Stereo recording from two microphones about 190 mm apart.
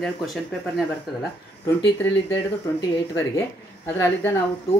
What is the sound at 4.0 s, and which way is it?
Speech, 15° left (ahead or behind).